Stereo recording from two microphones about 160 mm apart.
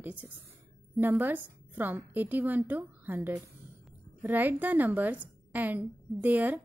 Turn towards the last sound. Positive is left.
turn(degrees=-10)  # may be behind; listen again after turning